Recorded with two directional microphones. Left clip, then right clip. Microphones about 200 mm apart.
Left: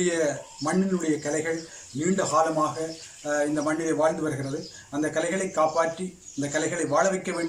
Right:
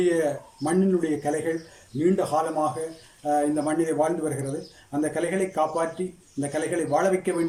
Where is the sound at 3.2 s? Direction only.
10° right (ahead or behind).